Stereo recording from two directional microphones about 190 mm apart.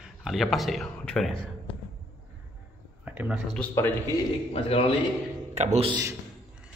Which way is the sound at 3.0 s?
10° right (ahead or behind).